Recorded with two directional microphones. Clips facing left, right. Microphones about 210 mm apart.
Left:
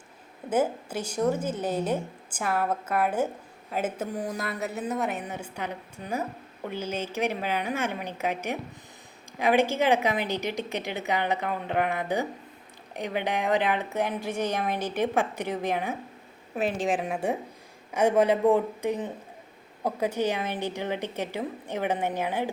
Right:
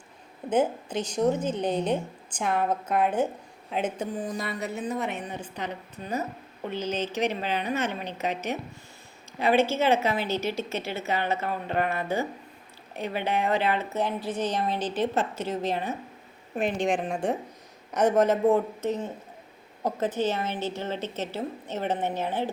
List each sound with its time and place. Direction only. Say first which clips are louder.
0.5 s a woman's voice: right 1 dB; 10° left (ahead or behind)